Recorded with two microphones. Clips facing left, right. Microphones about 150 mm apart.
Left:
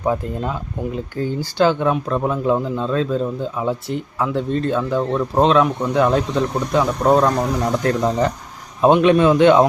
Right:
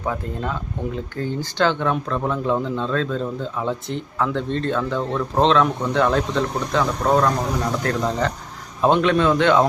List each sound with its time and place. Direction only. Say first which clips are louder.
0.0 s speech: left 5 dB; 15° left (ahead or behind)